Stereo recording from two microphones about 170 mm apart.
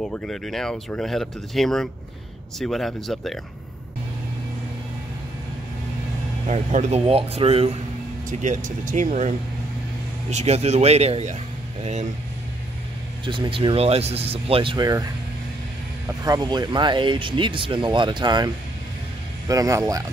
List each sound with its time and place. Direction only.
0.1 s speech: 5° left (ahead or behind)
6.4 s speech: 45° right (ahead or behind)
8.3 s speech: 45° right (ahead or behind)
10.3 s speech: 40° right (ahead or behind)
13.2 s speech: 30° right (ahead or behind)
16.3 s speech: 25° right (ahead or behind)